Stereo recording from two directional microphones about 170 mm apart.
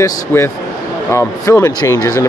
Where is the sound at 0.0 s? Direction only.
15° left (ahead or behind).